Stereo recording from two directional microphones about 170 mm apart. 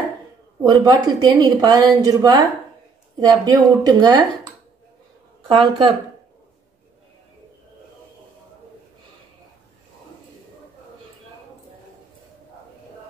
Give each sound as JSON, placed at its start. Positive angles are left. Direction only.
{"t": 0.7, "sound": "a woman's voice", "side_deg": -25}
{"t": 5.5, "sound": "a woman's voice", "side_deg": -30}